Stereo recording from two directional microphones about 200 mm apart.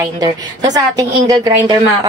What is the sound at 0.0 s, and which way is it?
A woman's voice, 20° right (ahead or behind).